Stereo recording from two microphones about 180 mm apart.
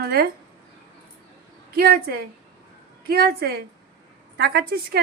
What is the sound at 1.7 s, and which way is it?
A woman's voice, 60° right (ahead or behind).